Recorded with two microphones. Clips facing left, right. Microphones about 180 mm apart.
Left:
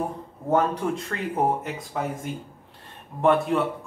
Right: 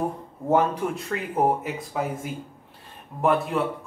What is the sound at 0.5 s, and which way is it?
Speech, 10° right (ahead or behind).